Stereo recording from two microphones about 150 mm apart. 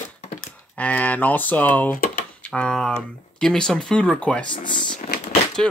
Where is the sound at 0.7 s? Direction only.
10° left (ahead or behind).